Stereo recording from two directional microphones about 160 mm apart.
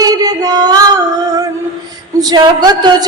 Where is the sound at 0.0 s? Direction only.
25° right (ahead or behind).